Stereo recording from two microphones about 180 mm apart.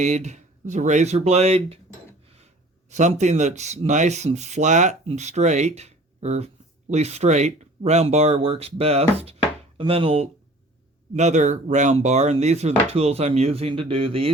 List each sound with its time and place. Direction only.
0.0 s speech: 40° right (ahead or behind)
2.9 s speech: 40° right (ahead or behind)